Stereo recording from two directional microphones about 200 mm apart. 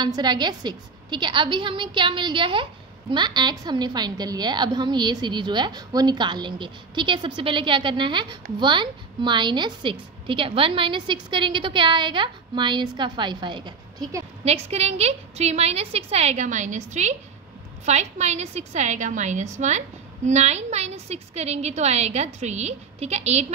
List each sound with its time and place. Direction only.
0.0 s a woman's voice: 20° right (ahead or behind)